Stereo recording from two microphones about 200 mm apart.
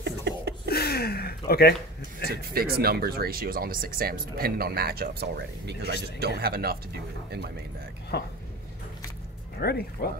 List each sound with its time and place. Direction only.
0.0 s a sound: 55° right (ahead or behind)
0.7 s gasp: 50° left (ahead or behind)
2.5 s speech: 50° right (ahead or behind)
8.1 s speech: 55° left (ahead or behind)
9.6 s speech: 50° left (ahead or behind)